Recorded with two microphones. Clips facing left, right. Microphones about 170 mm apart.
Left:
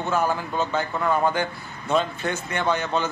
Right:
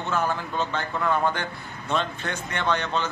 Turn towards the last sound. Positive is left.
turn(degrees=10)  # may be behind; listen again after turning